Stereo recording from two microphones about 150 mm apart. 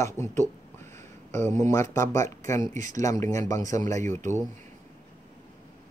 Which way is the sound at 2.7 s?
55° right (ahead or behind).